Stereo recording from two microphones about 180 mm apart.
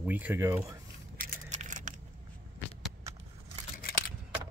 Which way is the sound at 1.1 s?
50° right (ahead or behind).